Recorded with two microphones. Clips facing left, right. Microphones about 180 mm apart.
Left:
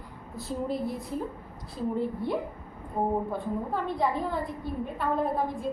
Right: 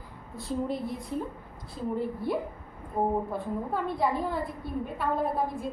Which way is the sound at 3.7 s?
5° right (ahead or behind).